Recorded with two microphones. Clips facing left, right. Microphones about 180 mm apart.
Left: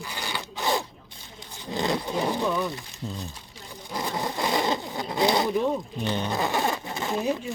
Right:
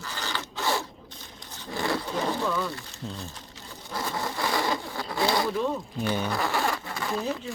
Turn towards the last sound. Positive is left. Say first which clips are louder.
# left 3 dB
turn(degrees=20)  # may be behind; listen again after turning